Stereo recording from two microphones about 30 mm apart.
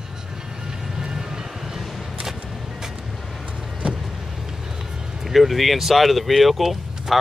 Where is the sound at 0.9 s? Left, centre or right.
Right.